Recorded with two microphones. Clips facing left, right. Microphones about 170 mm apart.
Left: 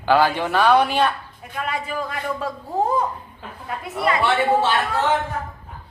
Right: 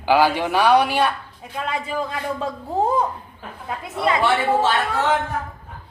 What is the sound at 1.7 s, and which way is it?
Speech, 25° right (ahead or behind).